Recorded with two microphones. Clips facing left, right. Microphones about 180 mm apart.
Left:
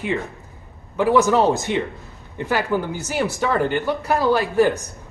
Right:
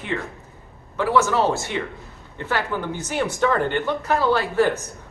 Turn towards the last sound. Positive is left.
turn(degrees=15)  # may be behind; listen again after turning